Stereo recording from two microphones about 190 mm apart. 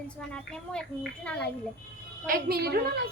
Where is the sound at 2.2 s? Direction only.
50° right (ahead or behind).